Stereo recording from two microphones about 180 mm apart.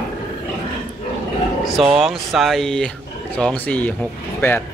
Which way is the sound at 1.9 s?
Centre (ahead or behind).